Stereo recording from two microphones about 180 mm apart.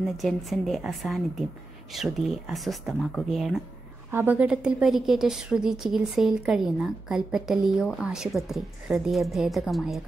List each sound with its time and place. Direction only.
0.2 s a woman's voice: centre (ahead or behind)